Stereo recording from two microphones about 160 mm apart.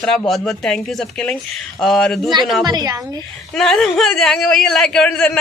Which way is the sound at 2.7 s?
25° right (ahead or behind).